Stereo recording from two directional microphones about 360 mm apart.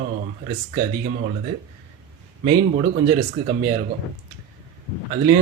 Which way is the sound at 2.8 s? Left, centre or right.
Centre.